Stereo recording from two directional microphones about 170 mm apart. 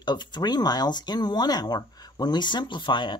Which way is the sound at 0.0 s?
25° left (ahead or behind).